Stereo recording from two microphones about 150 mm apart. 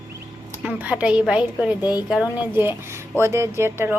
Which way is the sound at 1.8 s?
30° left (ahead or behind).